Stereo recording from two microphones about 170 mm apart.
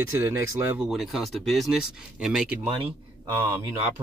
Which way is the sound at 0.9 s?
Centre (ahead or behind).